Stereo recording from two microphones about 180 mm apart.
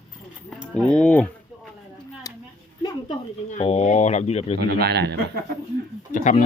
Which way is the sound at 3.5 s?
40° left (ahead or behind).